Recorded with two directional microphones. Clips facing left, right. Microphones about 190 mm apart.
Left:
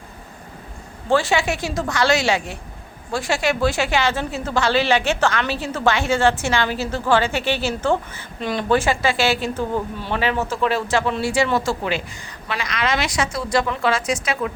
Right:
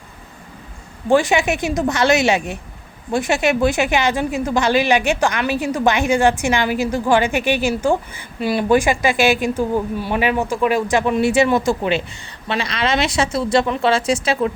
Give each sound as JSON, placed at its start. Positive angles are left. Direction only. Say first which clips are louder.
{"t": 1.1, "sound": "a woman's voice", "louder": "right 3 dB", "side_deg": -15}